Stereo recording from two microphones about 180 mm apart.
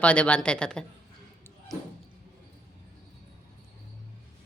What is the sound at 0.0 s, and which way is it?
Speech, 5° left (ahead or behind).